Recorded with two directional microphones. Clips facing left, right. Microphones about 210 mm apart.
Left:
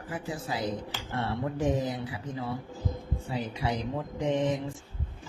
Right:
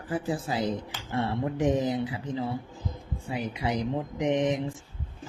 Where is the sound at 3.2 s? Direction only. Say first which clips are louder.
Right 2 dB; 15° right (ahead or behind).